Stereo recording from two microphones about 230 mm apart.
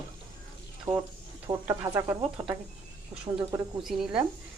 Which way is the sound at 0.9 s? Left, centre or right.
Centre.